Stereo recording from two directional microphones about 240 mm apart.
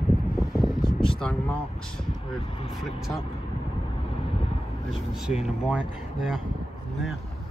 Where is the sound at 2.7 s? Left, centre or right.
Centre.